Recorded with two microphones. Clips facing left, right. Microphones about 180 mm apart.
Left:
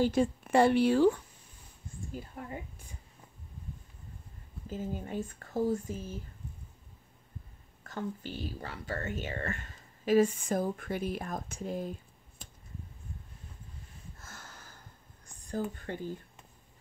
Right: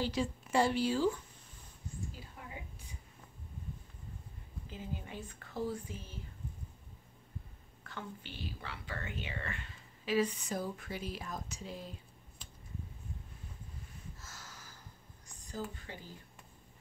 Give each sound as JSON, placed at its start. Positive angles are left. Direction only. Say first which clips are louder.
{"t": 0.0, "sound": "a woman's voice", "louder": "left 8 dB", "side_deg": 50}
{"t": 2.1, "sound": "speech", "louder": "left 8 dB", "side_deg": 50}
{"t": 4.6, "sound": "speech", "louder": "left 7 dB", "side_deg": 45}
{"t": 7.8, "sound": "speech", "louder": "left 8 dB", "side_deg": 40}
{"t": 14.1, "sound": "a sound", "louder": "left 2 dB", "side_deg": 55}
{"t": 15.4, "sound": "speech", "louder": "left 7 dB", "side_deg": 55}